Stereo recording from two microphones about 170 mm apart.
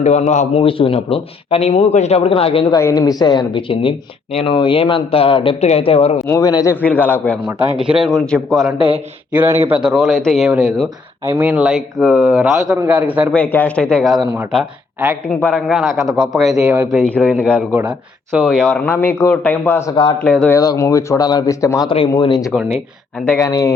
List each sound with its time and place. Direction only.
0.0 s a man's voice: 40° left (ahead or behind)
2.7 s a man's voice: 20° left (ahead or behind); by 6.1 s 35° left (ahead or behind)
6.2 s speech: 20° left (ahead or behind)
6.8 s speech: 10° left (ahead or behind)
7.8 s a man's voice: 5° right (ahead or behind)
9.3 s a man's voice: 10° right (ahead or behind)
13.3 s a man's voice: 10° left (ahead or behind); by 18.6 s 5° right (ahead or behind)
18.6 s a man's voice: 10° left (ahead or behind)
20.6 s speech: 20° left (ahead or behind)
21.8 s a man's voice: 30° left (ahead or behind)
23.2 s speech: 10° left (ahead or behind)
23.5 s speech: 20° left (ahead or behind)